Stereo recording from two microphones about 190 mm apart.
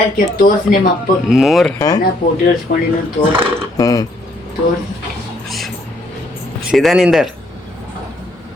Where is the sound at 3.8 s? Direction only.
20° left (ahead or behind).